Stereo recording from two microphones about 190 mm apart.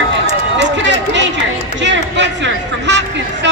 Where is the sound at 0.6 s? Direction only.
70° right (ahead or behind).